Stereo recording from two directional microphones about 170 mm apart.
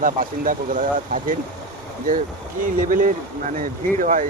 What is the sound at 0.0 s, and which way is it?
Speech, 50° right (ahead or behind).